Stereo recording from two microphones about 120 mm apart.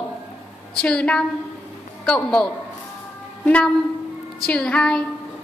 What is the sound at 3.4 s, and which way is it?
A woman's voice, 10° left (ahead or behind).